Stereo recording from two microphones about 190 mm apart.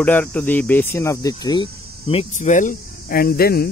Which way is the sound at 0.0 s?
10° left (ahead or behind).